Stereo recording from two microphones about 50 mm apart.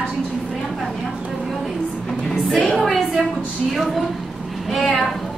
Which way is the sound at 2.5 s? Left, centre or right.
Centre.